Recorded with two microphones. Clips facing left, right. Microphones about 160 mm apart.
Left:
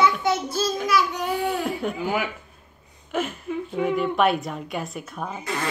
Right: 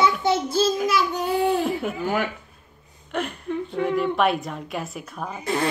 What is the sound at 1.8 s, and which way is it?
A woman's voice, centre (ahead or behind).